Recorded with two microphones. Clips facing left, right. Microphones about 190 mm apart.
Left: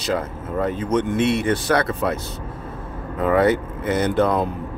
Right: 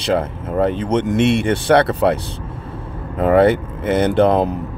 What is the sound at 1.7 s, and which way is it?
Speech, 70° right (ahead or behind).